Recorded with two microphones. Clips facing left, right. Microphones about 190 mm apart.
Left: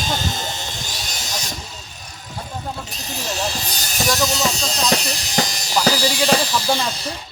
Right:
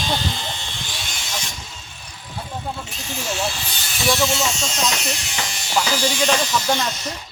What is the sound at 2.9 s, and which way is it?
Speech, 40° left (ahead or behind).